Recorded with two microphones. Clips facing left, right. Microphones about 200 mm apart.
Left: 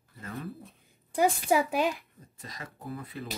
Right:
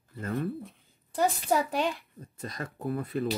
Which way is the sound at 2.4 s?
50° right (ahead or behind).